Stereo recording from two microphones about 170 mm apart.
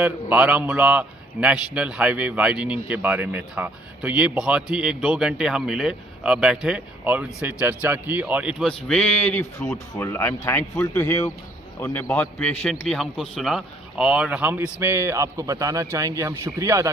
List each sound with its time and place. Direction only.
0.0 s a man's voice: 10° right (ahead or behind)